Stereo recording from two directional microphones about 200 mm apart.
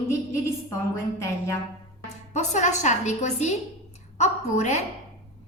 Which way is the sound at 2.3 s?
35° left (ahead or behind).